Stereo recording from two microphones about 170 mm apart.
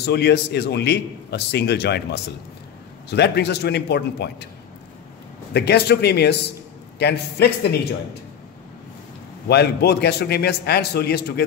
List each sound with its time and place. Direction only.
0.0 s a man's voice: 75° left (ahead or behind)
5.5 s a man's voice: 75° left (ahead or behind)
9.5 s a man's voice: 70° left (ahead or behind)